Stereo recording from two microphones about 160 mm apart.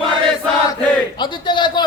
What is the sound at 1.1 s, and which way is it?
Speech, 30° left (ahead or behind).